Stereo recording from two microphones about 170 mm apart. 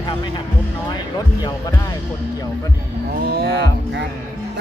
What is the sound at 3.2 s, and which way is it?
Speech, 70° right (ahead or behind).